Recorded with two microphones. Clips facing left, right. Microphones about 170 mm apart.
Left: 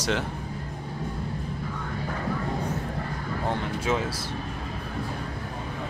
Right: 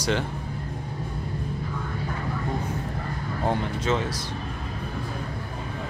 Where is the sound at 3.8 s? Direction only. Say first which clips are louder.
Even; 5° left (ahead or behind).